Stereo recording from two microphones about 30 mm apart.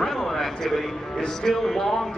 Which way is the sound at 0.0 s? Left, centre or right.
Centre.